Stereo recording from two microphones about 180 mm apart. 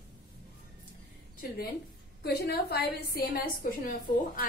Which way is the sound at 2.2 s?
60° left (ahead or behind).